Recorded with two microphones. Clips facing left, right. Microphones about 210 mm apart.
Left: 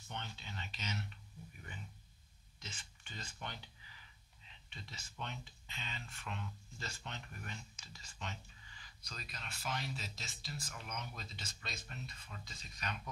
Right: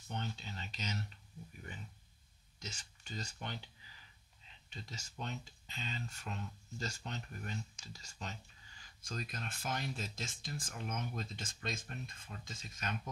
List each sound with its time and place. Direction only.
0.1 s speech: 40° right (ahead or behind)
2.6 s speech: 40° right (ahead or behind)